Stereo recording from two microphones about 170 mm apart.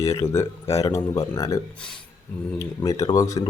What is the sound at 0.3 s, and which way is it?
Speech, 15° left (ahead or behind).